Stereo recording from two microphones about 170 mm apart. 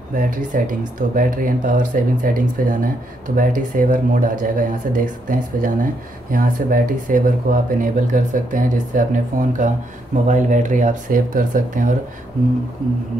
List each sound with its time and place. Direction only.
0.1 s speech: 50° right (ahead or behind)